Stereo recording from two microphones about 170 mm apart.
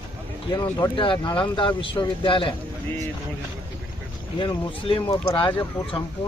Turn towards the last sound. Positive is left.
turn(degrees=25)  # may be behind; listen again after turning